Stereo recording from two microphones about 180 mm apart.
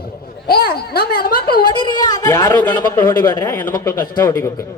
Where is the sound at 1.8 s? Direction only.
25° left (ahead or behind).